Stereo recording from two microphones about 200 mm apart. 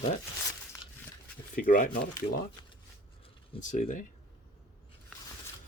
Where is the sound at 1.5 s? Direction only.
40° left (ahead or behind).